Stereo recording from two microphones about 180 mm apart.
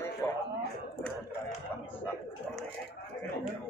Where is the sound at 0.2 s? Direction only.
10° left (ahead or behind).